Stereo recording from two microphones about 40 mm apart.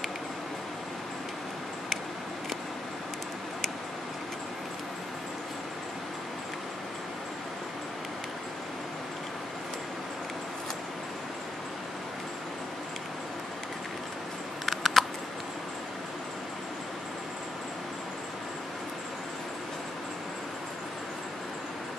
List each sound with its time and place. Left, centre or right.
14.7 s computer keyboard: centre